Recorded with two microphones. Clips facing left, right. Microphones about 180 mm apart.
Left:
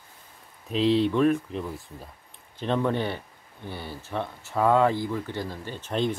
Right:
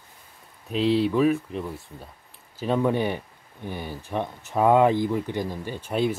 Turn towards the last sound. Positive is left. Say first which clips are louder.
# right 2 dB
turn(degrees=-10)  # may be behind; listen again after turning